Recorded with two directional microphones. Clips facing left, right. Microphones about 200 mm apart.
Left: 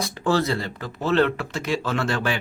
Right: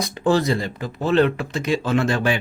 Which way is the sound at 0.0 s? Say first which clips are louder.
Right 3 dB; 15° right (ahead or behind).